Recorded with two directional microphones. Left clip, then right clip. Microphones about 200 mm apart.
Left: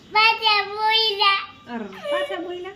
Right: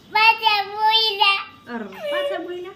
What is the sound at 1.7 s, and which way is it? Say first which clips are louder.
A woman's voice: even; 15° left (ahead or behind).